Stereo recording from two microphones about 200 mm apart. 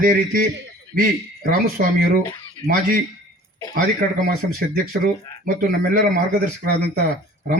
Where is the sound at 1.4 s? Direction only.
45° right (ahead or behind).